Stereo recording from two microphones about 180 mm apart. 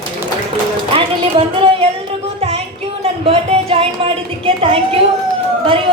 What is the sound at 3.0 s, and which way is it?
A woman's voice, 35° right (ahead or behind).